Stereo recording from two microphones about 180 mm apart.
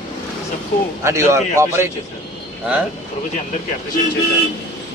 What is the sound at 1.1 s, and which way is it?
Speech, 15° right (ahead or behind).